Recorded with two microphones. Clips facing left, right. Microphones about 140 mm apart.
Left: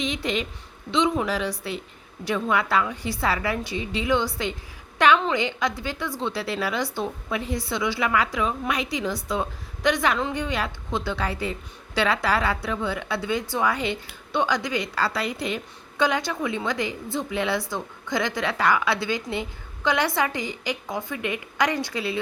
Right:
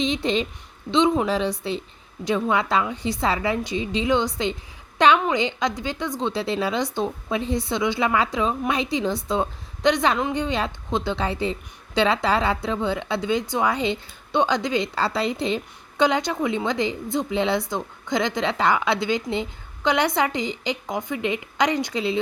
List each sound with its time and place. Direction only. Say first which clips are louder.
0.0 s a woman's voice: right 4 dB; 25° right (ahead or behind)